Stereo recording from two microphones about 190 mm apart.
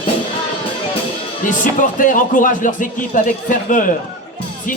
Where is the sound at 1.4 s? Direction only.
45° left (ahead or behind).